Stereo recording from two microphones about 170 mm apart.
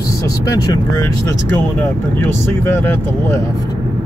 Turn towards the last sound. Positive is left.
turn(degrees=15)  # may be behind; listen again after turning